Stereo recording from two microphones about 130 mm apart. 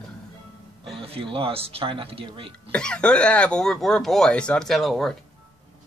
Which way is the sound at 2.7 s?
5° left (ahead or behind).